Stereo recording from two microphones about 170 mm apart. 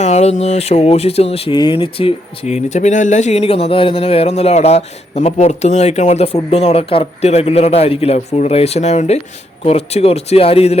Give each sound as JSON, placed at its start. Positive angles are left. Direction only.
{"t": 0.0, "sound": "speech", "side_deg": 40}